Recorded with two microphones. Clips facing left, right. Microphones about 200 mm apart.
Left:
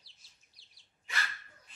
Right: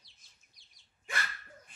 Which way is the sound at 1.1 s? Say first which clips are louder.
Right 2 dB; 50° right (ahead or behind).